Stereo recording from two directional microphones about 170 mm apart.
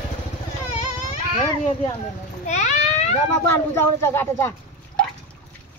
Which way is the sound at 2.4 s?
45° left (ahead or behind).